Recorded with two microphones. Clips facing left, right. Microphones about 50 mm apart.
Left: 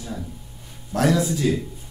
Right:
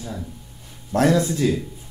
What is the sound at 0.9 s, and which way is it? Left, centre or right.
Speech, right.